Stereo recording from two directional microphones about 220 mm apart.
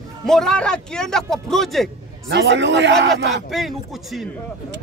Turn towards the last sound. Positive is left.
turn(degrees=0)  # may be behind; listen again after turning